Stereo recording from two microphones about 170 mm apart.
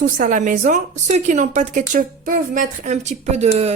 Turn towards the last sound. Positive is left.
turn(degrees=-40)  # may be behind; listen again after turning